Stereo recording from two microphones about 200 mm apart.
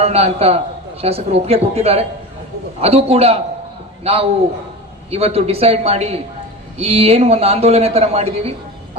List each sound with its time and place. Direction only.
0.0 s a man's voice: 30° right (ahead or behind)